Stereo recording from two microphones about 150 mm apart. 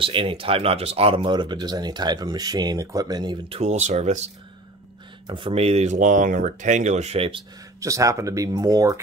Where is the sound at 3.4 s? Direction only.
40° right (ahead or behind).